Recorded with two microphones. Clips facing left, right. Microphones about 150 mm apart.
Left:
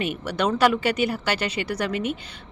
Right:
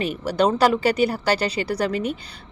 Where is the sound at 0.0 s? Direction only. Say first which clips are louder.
Right 4 dB; 35° right (ahead or behind).